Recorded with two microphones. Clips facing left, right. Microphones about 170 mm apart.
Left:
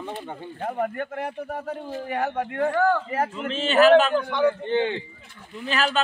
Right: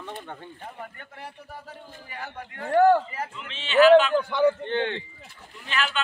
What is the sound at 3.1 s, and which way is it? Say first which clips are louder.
A man's voice: left 9 dB; 50° left (ahead or behind).